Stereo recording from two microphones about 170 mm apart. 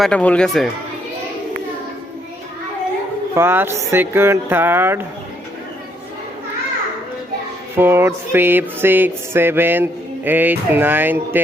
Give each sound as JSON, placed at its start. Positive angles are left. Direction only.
{"t": 0.0, "sound": "speech", "side_deg": 5}
{"t": 3.3, "sound": "music", "side_deg": -15}
{"t": 7.8, "sound": "music", "side_deg": -15}